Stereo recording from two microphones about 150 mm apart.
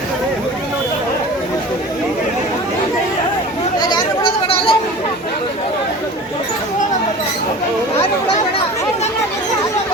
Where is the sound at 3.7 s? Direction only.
30° left (ahead or behind).